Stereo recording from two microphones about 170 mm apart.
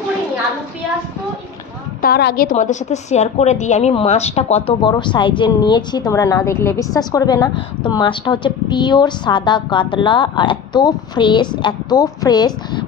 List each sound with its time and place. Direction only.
2.0 s a woman's voice: 65° left (ahead or behind)
2.5 s speech: 45° left (ahead or behind)
4.8 s a woman's voice: 25° left (ahead or behind)